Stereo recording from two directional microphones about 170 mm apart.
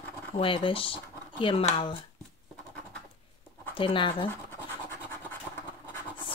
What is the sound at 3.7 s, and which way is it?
Speech, 30° left (ahead or behind).